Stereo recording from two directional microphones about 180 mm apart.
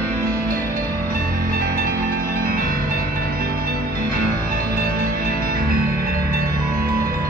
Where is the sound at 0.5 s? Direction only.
55° right (ahead or behind).